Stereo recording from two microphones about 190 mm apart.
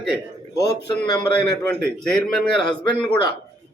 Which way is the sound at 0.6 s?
20° left (ahead or behind).